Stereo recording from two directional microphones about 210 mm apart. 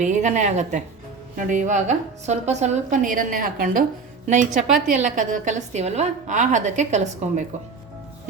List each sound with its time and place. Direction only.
0.0 s a woman's voice: 35° right (ahead or behind)